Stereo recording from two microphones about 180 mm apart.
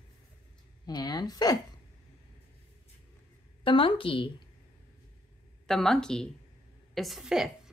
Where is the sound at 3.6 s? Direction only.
30° left (ahead or behind).